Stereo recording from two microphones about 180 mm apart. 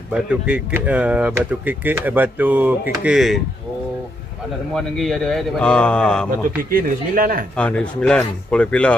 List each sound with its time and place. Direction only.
0.1 s speech: 5° right (ahead or behind)
4.7 s speech: centre (ahead or behind)
6.7 s speech: 55° right (ahead or behind)
7.5 s speech: 5° left (ahead or behind)